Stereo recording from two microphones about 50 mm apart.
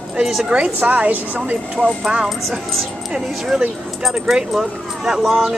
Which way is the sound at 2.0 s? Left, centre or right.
Centre.